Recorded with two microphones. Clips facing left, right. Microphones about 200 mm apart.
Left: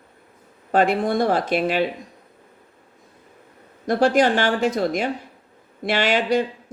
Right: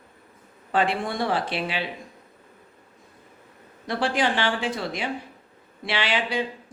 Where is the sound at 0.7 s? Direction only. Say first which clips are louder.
Left 6 dB; 45° left (ahead or behind).